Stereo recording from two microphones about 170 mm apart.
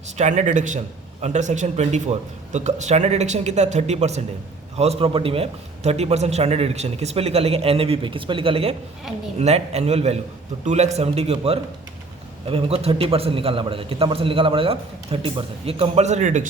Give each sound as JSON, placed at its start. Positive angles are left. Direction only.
{"t": 0.2, "sound": "a man's voice", "side_deg": -45}